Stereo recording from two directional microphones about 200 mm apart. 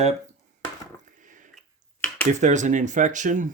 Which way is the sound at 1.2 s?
40° right (ahead or behind).